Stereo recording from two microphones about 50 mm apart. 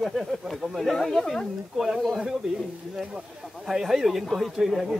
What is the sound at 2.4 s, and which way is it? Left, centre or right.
Speech, centre.